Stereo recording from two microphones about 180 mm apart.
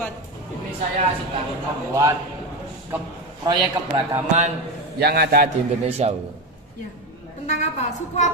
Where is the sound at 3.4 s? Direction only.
20° right (ahead or behind).